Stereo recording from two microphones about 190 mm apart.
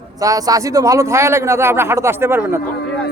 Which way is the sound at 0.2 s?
20° right (ahead or behind).